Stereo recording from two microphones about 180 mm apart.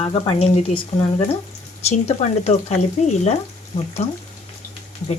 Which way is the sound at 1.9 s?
35° left (ahead or behind).